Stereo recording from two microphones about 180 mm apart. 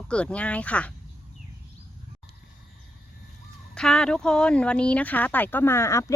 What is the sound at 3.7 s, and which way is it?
Speech, 5° left (ahead or behind).